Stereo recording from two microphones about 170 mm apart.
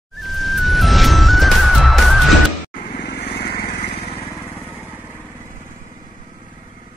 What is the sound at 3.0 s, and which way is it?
Vehicle, 75° left (ahead or behind).